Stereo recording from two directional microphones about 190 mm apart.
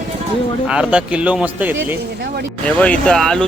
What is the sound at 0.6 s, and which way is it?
Speech, 5° right (ahead or behind).